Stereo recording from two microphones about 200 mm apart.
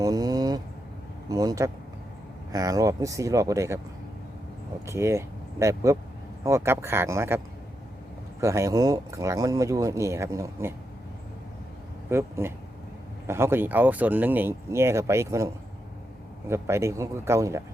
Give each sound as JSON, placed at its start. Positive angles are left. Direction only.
{"t": 0.0, "sound": "a sound", "side_deg": -20}
{"t": 1.3, "sound": "speech", "side_deg": -15}
{"t": 4.9, "sound": "speech", "side_deg": -15}
{"t": 12.1, "sound": "speech", "side_deg": -10}
{"t": 16.5, "sound": "speech", "side_deg": -15}